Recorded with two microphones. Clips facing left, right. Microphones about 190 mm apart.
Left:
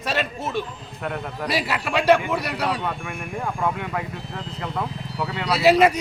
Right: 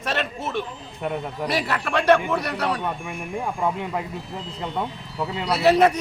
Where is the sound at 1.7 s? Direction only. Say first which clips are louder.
Even; 5° left (ahead or behind).